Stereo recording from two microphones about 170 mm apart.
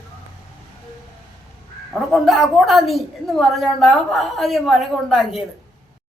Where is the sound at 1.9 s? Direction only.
Centre (ahead or behind).